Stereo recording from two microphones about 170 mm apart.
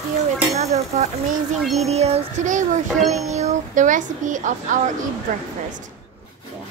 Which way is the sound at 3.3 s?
40° right (ahead or behind).